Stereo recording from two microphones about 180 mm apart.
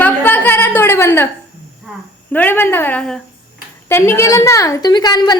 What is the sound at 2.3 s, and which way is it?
A woman's voice, 10° left (ahead or behind).